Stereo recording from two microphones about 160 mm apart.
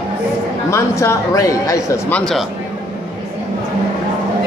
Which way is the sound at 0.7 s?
20° left (ahead or behind).